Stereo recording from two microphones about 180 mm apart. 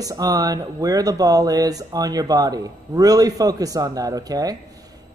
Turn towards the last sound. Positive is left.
turn(degrees=-20)  # may be behind; listen again after turning